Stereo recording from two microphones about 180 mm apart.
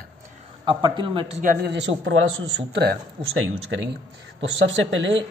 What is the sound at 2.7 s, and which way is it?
A man's voice, 65° right (ahead or behind).